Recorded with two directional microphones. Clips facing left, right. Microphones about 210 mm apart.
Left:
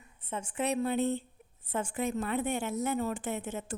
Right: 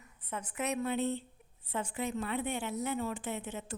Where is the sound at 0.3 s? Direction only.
25° left (ahead or behind).